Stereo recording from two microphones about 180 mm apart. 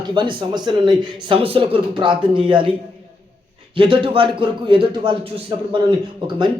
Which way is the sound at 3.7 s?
25° right (ahead or behind).